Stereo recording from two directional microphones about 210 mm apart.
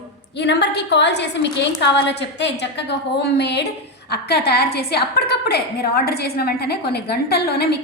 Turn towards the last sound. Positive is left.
turn(degrees=50)  # may be behind; listen again after turning